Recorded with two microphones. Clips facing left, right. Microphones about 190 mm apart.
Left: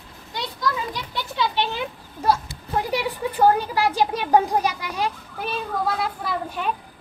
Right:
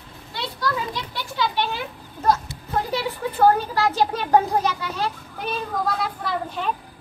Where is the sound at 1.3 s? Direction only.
20° left (ahead or behind).